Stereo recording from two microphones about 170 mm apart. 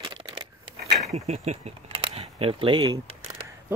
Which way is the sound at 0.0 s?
25° right (ahead or behind).